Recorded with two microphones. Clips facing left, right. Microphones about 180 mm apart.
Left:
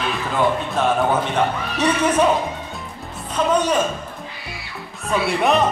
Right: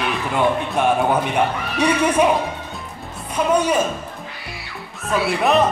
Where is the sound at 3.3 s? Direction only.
10° right (ahead or behind).